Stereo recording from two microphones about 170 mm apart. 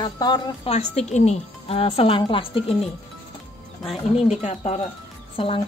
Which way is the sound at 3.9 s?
40° left (ahead or behind).